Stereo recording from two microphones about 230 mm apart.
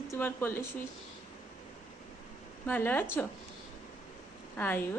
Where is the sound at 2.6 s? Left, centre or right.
Centre.